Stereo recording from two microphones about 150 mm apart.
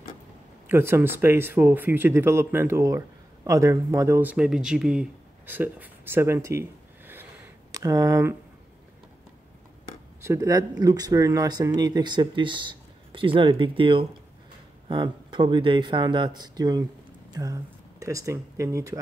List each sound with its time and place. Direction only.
0.7 s speech: 15° right (ahead or behind)
10.2 s speech: 20° right (ahead or behind)